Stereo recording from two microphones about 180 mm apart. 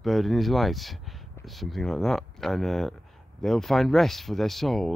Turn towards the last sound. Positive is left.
turn(degrees=0)  # may be behind; listen again after turning